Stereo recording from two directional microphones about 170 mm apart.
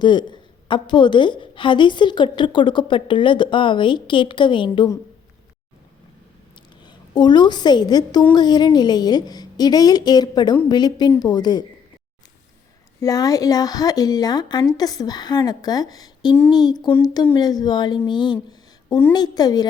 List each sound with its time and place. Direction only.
0.0 s a woman's voice: 25° left (ahead or behind)
6.8 s a woman's voice: 25° left (ahead or behind)
13.0 s a woman's voice: 20° left (ahead or behind)